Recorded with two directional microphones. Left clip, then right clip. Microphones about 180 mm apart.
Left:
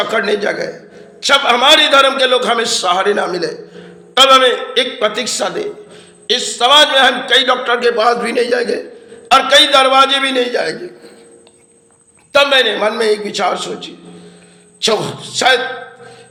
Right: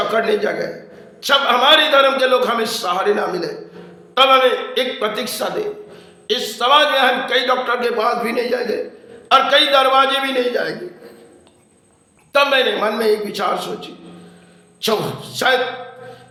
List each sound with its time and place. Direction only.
0.1 s a man's voice: 20° left (ahead or behind)
12.3 s a man's voice: 20° left (ahead or behind)